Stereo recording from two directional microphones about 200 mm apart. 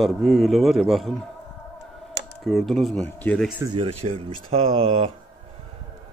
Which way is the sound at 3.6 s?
25° right (ahead or behind).